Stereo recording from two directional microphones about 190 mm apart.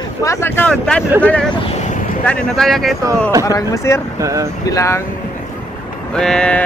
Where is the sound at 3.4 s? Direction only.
15° left (ahead or behind).